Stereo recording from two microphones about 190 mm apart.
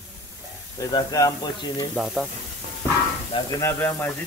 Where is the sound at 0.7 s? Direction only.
20° left (ahead or behind).